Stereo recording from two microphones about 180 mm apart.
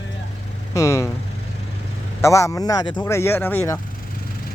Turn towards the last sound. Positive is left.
turn(degrees=15)  # may be behind; listen again after turning